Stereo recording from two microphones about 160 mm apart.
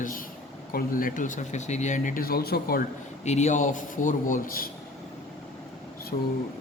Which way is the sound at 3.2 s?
45° left (ahead or behind).